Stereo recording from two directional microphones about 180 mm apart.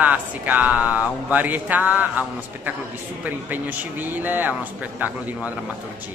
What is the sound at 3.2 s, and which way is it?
Speech, 10° right (ahead or behind).